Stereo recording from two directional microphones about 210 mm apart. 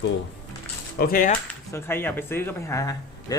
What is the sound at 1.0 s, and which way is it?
Speech, 40° left (ahead or behind).